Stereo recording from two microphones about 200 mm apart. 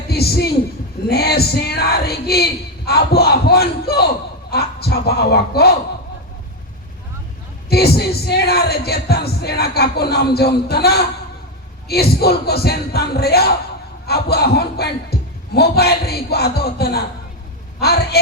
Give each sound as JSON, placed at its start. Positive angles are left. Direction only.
{"t": 0.1, "sound": "a man's voice", "side_deg": 50}
{"t": 7.7, "sound": "a man's voice", "side_deg": 50}